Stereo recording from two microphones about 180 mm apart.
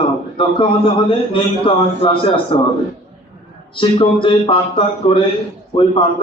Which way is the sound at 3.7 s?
30° left (ahead or behind).